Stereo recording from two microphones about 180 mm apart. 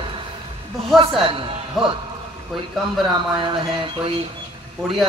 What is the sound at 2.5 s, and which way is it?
Speech, centre (ahead or behind).